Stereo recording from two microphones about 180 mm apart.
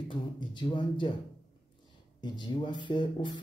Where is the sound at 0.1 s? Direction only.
25° left (ahead or behind).